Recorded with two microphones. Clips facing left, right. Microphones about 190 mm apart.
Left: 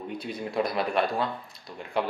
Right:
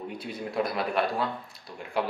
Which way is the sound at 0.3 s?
5° right (ahead or behind).